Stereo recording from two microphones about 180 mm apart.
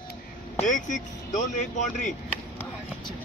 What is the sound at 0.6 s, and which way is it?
Speech, 45° left (ahead or behind).